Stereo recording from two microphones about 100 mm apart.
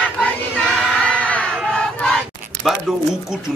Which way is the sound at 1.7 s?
5° left (ahead or behind).